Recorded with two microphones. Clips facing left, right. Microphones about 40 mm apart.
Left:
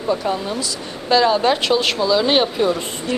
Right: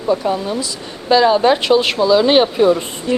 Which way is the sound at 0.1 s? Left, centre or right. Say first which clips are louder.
Right 4 dB; centre.